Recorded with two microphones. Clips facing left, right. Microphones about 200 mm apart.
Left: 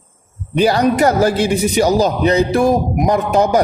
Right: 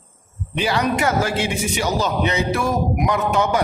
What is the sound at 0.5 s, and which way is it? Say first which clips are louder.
A man's voice: left 7 dB; 40° left (ahead or behind).